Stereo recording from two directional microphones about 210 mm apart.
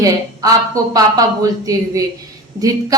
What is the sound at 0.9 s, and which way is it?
A woman's voice, 15° right (ahead or behind).